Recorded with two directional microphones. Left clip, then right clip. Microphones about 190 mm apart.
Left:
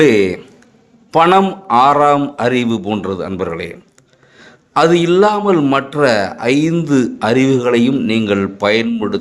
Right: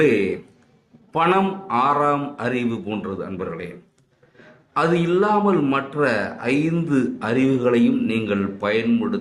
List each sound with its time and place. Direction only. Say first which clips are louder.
0.0 s a man's voice: left 7 dB; 45° left (ahead or behind)
4.7 s a man's voice: left 8 dB; 50° left (ahead or behind)